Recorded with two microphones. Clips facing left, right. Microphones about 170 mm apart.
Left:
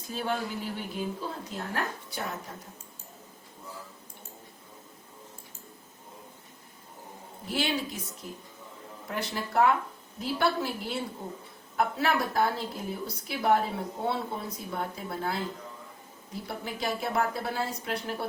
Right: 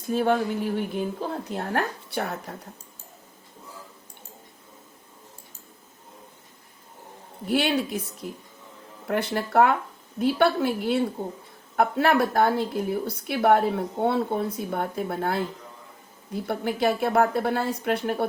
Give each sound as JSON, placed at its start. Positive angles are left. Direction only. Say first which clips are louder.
{"t": 0.0, "sound": "a woman's voice", "louder": "right 9 dB", "side_deg": -55}
{"t": 7.4, "sound": "a woman's voice", "louder": "right 7 dB", "side_deg": -65}